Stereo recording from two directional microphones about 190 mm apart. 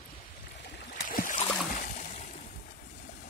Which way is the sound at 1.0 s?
45° left (ahead or behind).